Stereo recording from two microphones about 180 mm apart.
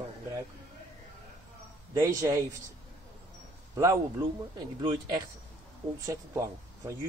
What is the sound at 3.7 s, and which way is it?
Speech, 15° right (ahead or behind).